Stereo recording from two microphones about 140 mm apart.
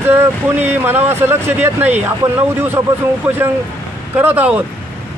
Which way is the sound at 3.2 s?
15° right (ahead or behind).